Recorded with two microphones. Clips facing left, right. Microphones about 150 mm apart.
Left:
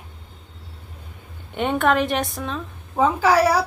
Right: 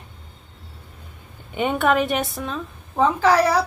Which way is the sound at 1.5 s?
Centre (ahead or behind).